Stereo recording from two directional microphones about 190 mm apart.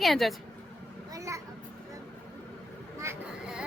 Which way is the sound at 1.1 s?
15° right (ahead or behind).